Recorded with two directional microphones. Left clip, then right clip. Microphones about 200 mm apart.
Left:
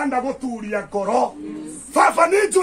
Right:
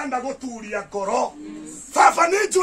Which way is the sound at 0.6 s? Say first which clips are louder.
Left 3 dB; 25° right (ahead or behind).